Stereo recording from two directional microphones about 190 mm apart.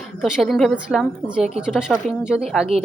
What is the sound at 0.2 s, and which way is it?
A woman's voice, centre (ahead or behind).